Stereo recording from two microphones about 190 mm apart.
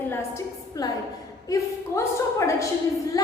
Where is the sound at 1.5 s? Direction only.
15° left (ahead or behind).